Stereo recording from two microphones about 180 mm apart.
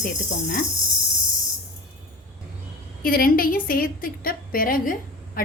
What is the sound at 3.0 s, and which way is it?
A woman's voice, 55° left (ahead or behind).